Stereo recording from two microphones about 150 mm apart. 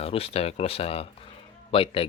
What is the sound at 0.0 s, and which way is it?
Speech, 40° left (ahead or behind).